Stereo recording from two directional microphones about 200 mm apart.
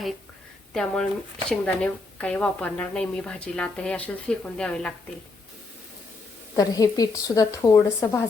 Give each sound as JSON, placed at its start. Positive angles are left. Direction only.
{"t": 0.7, "sound": "a woman's voice", "side_deg": 5}
{"t": 6.6, "sound": "speech", "side_deg": 20}